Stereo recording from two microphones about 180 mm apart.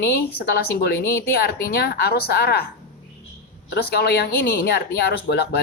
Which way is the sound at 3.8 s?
65° left (ahead or behind).